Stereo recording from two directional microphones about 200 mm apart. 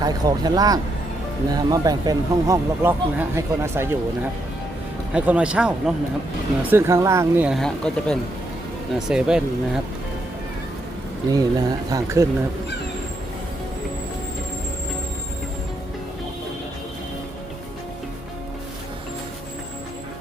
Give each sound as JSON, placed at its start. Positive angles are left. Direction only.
{"t": 0.0, "sound": "speech", "side_deg": -20}
{"t": 11.3, "sound": "speech", "side_deg": -20}